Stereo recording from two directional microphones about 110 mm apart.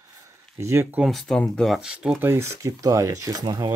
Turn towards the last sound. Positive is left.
turn(degrees=-35)  # may be behind; listen again after turning